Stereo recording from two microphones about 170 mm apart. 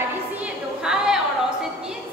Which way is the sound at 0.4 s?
5° right (ahead or behind).